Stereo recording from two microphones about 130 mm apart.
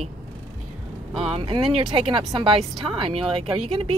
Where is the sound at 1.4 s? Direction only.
40° right (ahead or behind).